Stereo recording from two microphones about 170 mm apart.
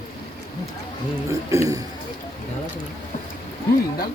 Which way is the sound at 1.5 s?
20° right (ahead or behind).